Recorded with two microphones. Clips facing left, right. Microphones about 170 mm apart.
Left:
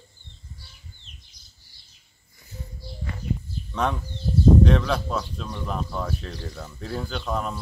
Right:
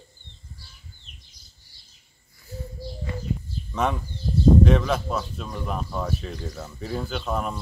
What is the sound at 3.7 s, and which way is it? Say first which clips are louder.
A man's voice: right 1 dB; 5° right (ahead or behind).